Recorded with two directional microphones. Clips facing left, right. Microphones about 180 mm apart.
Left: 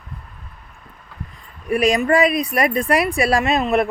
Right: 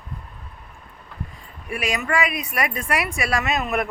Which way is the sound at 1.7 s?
35° left (ahead or behind).